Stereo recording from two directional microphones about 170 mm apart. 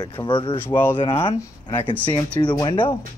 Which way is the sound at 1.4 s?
15° left (ahead or behind).